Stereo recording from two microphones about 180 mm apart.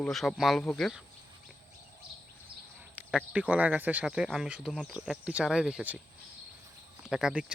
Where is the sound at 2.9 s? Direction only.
5° right (ahead or behind).